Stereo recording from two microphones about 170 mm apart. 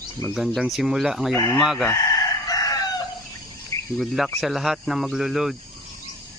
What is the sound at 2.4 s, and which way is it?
Chicken, 20° left (ahead or behind).